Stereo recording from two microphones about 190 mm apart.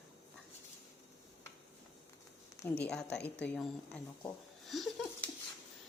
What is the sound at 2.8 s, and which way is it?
Speech, 5° left (ahead or behind).